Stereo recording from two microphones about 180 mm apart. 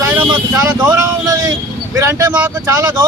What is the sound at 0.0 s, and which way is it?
Speech, 20° right (ahead or behind).